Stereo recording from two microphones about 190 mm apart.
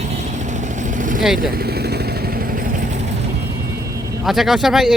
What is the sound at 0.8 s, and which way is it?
Vehicle, 45° right (ahead or behind).